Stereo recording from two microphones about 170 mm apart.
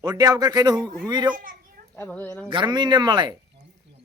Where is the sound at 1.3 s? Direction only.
55° right (ahead or behind).